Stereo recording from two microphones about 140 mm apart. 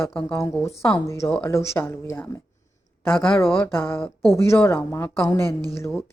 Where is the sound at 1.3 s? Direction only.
10° left (ahead or behind).